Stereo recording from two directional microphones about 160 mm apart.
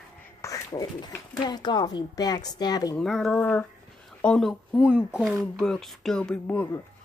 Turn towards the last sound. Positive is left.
turn(degrees=10)  # may be behind; listen again after turning